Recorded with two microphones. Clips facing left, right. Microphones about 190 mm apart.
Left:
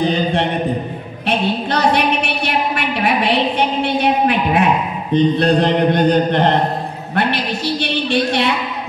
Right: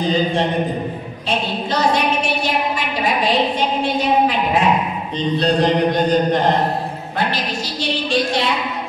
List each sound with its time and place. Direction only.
0.0 s a woman's voice: 65° left (ahead or behind)